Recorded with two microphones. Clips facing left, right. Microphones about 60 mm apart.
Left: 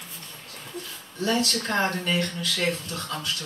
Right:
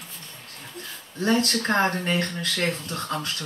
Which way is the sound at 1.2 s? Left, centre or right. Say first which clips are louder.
Right 3 dB; right.